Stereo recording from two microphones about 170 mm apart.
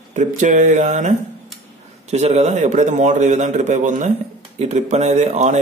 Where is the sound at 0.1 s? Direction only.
45° right (ahead or behind).